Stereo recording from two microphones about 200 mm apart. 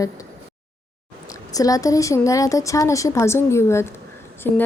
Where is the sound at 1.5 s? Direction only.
15° left (ahead or behind).